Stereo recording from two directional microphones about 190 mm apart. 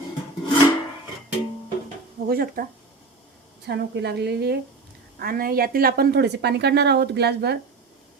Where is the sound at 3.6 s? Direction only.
60° right (ahead or behind).